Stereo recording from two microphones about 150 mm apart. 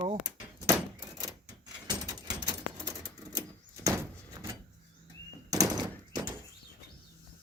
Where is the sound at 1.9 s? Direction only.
25° right (ahead or behind).